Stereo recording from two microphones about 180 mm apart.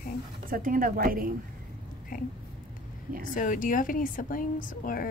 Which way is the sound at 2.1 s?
50° left (ahead or behind).